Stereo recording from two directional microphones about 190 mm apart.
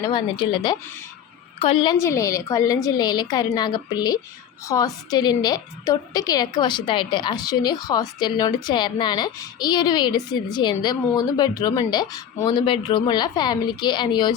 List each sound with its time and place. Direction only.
0.0 s a woman's voice: 25° left (ahead or behind)
2.0 s a woman's voice: 15° left (ahead or behind)